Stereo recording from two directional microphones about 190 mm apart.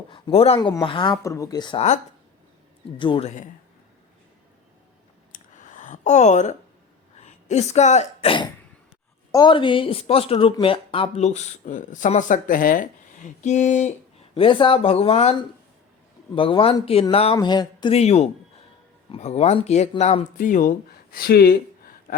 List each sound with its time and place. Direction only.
0.1 s speech: 30° left (ahead or behind)
3.0 s speech: 25° left (ahead or behind)
3.2 s speech: 40° left (ahead or behind)
5.3 s a sound: 40° left (ahead or behind)
7.2 s speech: 35° left (ahead or behind)
14.3 s speech: 25° left (ahead or behind); by 21.6 s 55° left (ahead or behind)